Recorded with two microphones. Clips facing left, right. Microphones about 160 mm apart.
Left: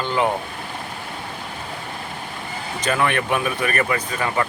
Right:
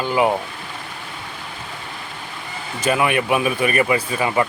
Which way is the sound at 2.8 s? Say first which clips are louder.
Right 3 dB; 10° right (ahead or behind).